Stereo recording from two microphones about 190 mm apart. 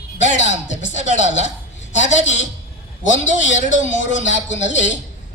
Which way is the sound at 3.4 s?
75° left (ahead or behind).